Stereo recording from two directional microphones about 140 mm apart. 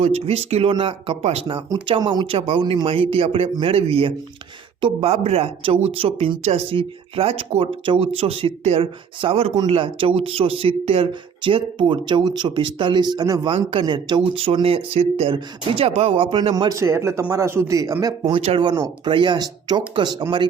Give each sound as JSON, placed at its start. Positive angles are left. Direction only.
{"t": 0.0, "sound": "speech", "side_deg": -45}
{"t": 1.7, "sound": "speech", "side_deg": -30}
{"t": 13.5, "sound": "speech", "side_deg": -40}
{"t": 16.7, "sound": "speech", "side_deg": -20}